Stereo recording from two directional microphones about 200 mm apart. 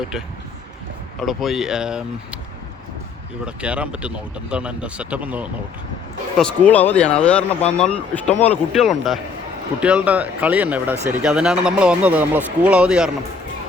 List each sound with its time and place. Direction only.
1.2 s speech: centre (ahead or behind)
3.4 s speech: 5° right (ahead or behind)
6.3 s speech: 5° left (ahead or behind)